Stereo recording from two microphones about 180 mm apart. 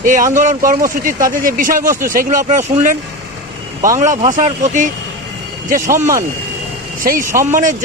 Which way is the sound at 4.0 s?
45° right (ahead or behind).